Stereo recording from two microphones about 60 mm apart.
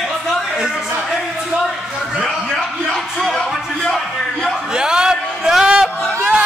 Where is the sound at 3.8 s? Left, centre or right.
Centre.